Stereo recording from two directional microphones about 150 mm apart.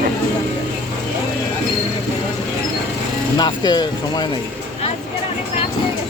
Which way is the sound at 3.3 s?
30° left (ahead or behind).